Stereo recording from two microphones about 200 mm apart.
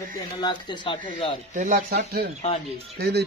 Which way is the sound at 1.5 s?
40° right (ahead or behind).